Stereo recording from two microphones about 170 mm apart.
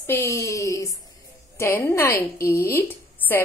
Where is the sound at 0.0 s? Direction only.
15° left (ahead or behind).